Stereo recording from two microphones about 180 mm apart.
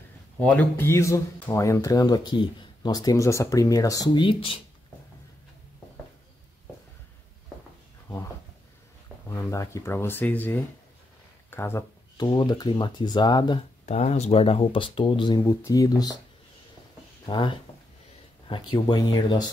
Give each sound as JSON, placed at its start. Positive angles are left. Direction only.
{"t": 0.4, "sound": "speech", "side_deg": 10}
{"t": 9.3, "sound": "speech", "side_deg": 15}
{"t": 11.5, "sound": "a sound", "side_deg": 15}
{"t": 12.3, "sound": "speech", "side_deg": 25}
{"t": 13.8, "sound": "speech", "side_deg": 40}
{"t": 17.3, "sound": "speech", "side_deg": 25}